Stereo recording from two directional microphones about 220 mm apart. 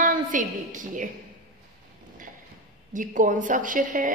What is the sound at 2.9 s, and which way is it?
A woman's voice, 35° right (ahead or behind).